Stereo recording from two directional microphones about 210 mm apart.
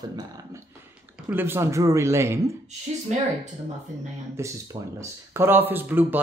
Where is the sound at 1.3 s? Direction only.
10° right (ahead or behind).